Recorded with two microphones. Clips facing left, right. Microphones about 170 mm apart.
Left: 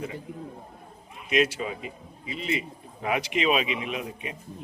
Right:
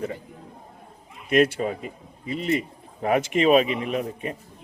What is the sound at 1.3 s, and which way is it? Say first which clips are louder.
Speech: right 5 dB; 55° right (ahead or behind).